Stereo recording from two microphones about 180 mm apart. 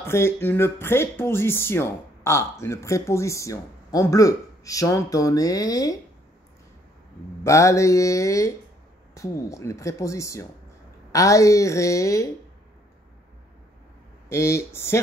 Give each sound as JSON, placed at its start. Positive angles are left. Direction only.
{"t": 0.0, "sound": "speech", "side_deg": 15}
{"t": 7.4, "sound": "speech", "side_deg": 15}
{"t": 14.3, "sound": "speech", "side_deg": 15}